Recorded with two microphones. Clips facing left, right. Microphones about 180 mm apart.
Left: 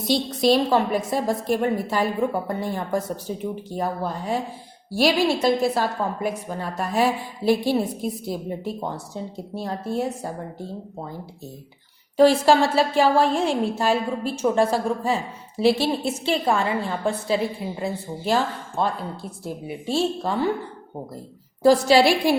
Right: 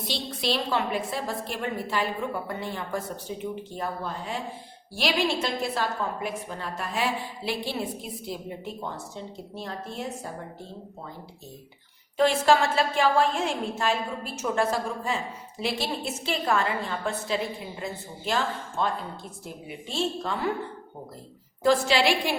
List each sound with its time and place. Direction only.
0.1 s a woman's voice: 45° left (ahead or behind)
12.1 s a woman's voice: 35° left (ahead or behind)
21.6 s a woman's voice: 35° left (ahead or behind)